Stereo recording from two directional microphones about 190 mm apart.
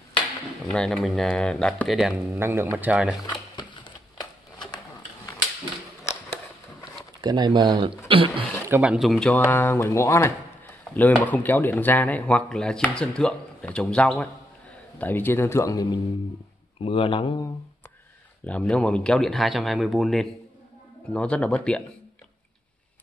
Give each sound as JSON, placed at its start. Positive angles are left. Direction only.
{"t": 0.7, "sound": "speech", "side_deg": 0}
{"t": 3.3, "sound": "a sound", "side_deg": 25}
{"t": 6.0, "sound": "a sound", "side_deg": 15}
{"t": 7.2, "sound": "speech", "side_deg": -20}
{"t": 8.6, "sound": "speech", "side_deg": -10}
{"t": 18.4, "sound": "speech", "side_deg": 5}